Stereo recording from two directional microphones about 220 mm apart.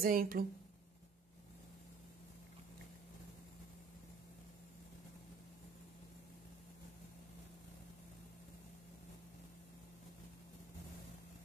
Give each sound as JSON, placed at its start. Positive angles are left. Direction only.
{"t": 0.0, "sound": "speech", "side_deg": -40}